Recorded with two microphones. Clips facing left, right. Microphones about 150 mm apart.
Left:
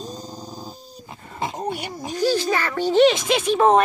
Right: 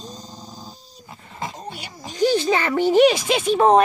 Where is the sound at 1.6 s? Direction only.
55° left (ahead or behind).